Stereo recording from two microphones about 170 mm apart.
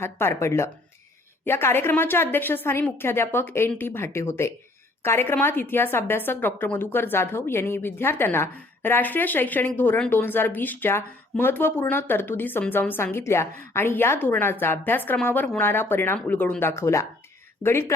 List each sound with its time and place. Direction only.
0.0 s a woman's voice: 15° left (ahead or behind)